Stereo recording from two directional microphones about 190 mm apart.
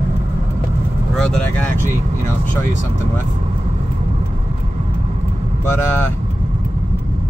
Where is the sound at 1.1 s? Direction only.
5° left (ahead or behind).